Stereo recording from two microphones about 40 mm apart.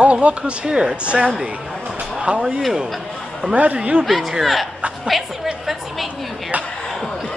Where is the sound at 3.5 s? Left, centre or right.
Right.